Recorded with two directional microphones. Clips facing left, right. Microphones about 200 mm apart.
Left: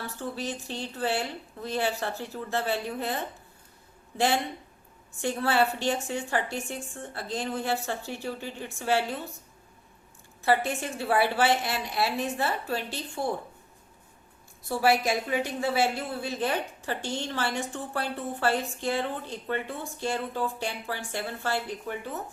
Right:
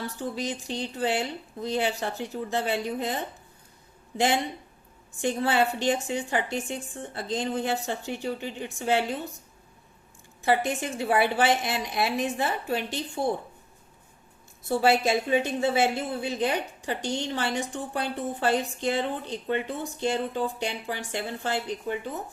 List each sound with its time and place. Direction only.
0.2 s a woman's voice: 15° right (ahead or behind)
5.2 s a woman's voice: 20° right (ahead or behind)
10.4 s a woman's voice: 15° right (ahead or behind)
14.7 s a woman's voice: 25° right (ahead or behind)